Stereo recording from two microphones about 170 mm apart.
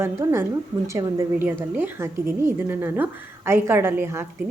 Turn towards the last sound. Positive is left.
turn(degrees=-15)  # may be behind; listen again after turning